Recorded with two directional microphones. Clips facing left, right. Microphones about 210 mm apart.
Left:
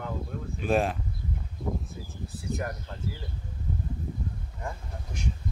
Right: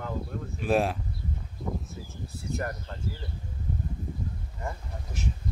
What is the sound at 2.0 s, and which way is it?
Speech, 15° left (ahead or behind).